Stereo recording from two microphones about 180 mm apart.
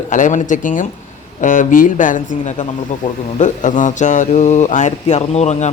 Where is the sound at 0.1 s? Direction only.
45° left (ahead or behind).